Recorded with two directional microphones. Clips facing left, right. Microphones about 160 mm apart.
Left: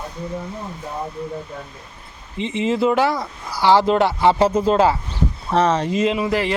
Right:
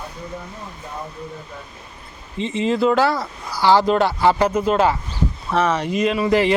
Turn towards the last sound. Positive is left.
turn(degrees=0)  # may be behind; listen again after turning